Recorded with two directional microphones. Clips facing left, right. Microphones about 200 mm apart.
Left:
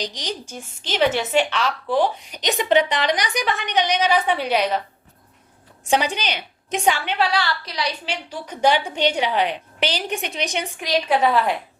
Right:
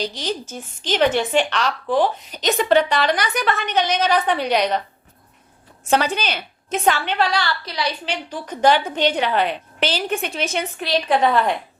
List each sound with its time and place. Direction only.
0.0 s a woman's voice: 15° left (ahead or behind)
5.9 s a woman's voice: 15° left (ahead or behind)
7.6 s a woman's voice: 30° right (ahead or behind)
8.0 s a woman's voice: 10° left (ahead or behind)